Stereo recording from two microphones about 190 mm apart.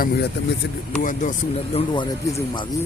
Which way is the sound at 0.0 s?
60° left (ahead or behind).